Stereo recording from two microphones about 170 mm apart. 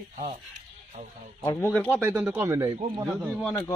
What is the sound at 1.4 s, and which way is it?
Speech, 20° left (ahead or behind).